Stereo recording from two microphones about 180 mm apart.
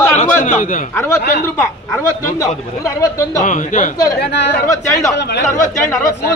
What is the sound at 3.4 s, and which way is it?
Speech, 45° left (ahead or behind).